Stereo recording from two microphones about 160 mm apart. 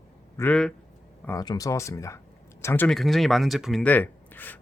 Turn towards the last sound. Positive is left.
turn(degrees=10)  # may be behind; listen again after turning